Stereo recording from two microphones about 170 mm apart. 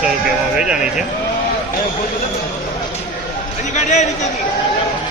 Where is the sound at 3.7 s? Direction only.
45° left (ahead or behind).